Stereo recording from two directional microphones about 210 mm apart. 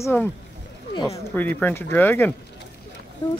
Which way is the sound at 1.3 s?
10° left (ahead or behind).